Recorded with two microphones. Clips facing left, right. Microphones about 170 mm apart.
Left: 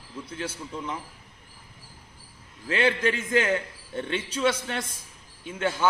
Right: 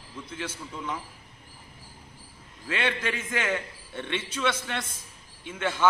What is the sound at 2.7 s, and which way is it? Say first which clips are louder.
A man's voice: left 5 dB; 35° left (ahead or behind).